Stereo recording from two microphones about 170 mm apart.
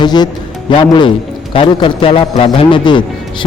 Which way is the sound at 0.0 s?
25° left (ahead or behind).